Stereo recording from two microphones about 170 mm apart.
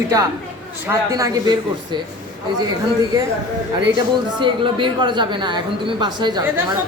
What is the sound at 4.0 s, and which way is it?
Speech, 30° right (ahead or behind).